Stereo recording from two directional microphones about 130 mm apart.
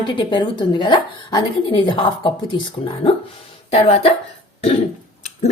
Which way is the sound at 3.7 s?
50° left (ahead or behind).